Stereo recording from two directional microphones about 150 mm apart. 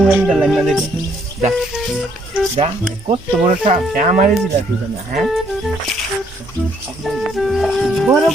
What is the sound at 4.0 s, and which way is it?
Speech, 50° right (ahead or behind).